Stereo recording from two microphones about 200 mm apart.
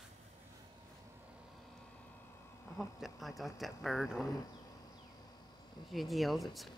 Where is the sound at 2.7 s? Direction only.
Centre (ahead or behind).